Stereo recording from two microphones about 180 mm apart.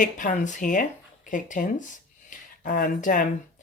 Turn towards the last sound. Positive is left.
turn(degrees=45)  # may be behind; listen again after turning